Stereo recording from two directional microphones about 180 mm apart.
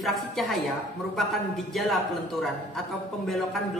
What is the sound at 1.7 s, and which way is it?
A man's voice, centre (ahead or behind).